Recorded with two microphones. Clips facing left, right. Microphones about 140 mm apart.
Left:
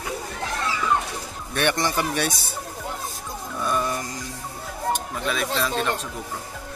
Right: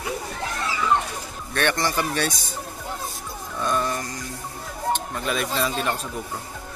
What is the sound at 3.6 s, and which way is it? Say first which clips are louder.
Music: right 1 dB; 5° left (ahead or behind).